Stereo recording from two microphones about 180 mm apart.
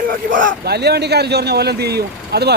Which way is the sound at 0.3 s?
50° right (ahead or behind).